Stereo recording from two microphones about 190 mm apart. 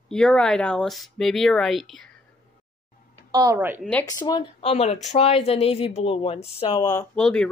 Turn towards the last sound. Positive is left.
turn(degrees=5)  # may be behind; listen again after turning